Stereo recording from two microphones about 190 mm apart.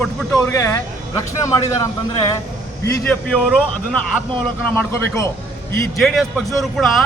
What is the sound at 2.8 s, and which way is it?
Speech, 5° left (ahead or behind).